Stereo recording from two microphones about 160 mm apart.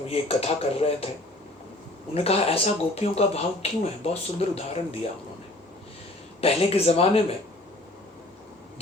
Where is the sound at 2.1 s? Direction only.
40° left (ahead or behind).